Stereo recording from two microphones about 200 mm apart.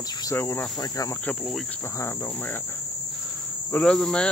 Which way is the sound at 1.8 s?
10° left (ahead or behind).